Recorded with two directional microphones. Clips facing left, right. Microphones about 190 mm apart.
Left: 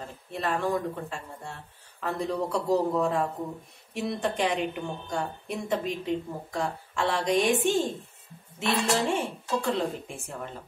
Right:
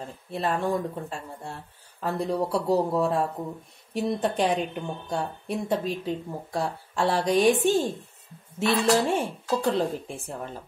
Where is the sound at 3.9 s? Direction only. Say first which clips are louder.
Right 3 dB; 30° right (ahead or behind).